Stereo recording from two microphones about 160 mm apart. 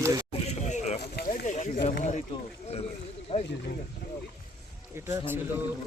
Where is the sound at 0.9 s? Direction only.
85° left.